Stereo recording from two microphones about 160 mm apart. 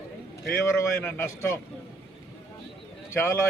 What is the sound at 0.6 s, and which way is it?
Speech, 15° left (ahead or behind).